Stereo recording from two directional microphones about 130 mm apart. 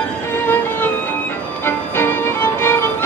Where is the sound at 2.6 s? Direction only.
20° left (ahead or behind).